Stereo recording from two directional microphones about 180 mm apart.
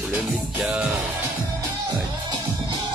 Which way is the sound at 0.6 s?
Centre (ahead or behind).